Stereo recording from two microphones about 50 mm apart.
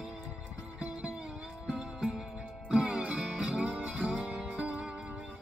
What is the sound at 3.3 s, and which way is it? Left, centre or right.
Music, centre.